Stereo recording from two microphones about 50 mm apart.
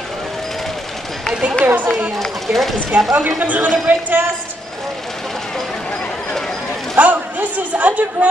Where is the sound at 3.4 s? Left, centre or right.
Right.